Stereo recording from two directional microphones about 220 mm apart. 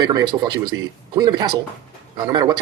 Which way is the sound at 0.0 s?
15° right (ahead or behind).